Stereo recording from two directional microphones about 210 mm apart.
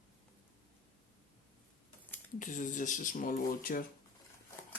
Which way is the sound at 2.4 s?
40° left (ahead or behind).